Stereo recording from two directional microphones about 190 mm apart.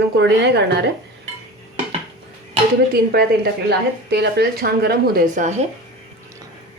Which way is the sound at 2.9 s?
55° right (ahead or behind).